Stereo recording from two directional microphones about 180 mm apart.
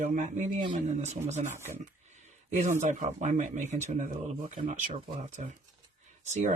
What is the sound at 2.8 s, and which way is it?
Speech, 40° right (ahead or behind).